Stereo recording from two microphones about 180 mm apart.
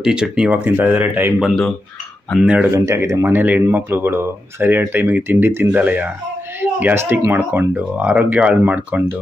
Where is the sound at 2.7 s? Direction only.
15° right (ahead or behind).